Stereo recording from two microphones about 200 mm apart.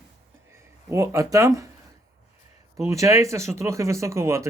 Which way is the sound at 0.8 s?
15° right (ahead or behind).